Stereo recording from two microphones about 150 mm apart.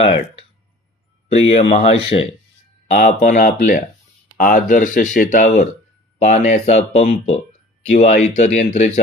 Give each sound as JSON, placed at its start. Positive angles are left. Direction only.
{"t": 1.3, "sound": "speech", "side_deg": 45}
{"t": 2.9, "sound": "speech", "side_deg": 65}